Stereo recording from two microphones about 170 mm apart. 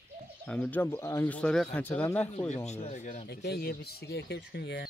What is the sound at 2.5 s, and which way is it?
Speech, 40° left (ahead or behind).